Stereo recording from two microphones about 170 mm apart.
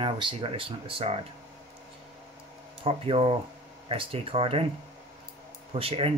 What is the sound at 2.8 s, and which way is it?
Speech, 35° right (ahead or behind).